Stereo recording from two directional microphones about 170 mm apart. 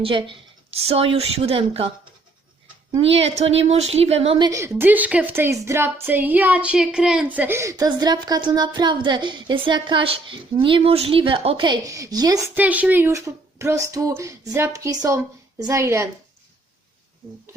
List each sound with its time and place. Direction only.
0.0 s speech: 30° right (ahead or behind)
3.0 s speech: 35° right (ahead or behind)
4.8 s a woman's voice: 10° right (ahead or behind)
12.5 s speech: 10° right (ahead or behind)